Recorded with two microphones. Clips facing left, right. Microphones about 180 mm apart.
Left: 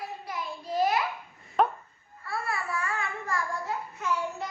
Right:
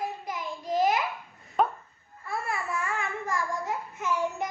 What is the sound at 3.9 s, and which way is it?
Child singing, 20° right (ahead or behind).